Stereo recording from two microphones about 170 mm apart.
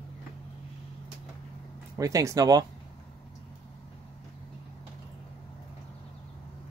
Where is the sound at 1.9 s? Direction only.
20° right (ahead or behind).